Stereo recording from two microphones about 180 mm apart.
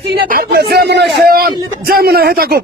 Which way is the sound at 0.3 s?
60° right (ahead or behind).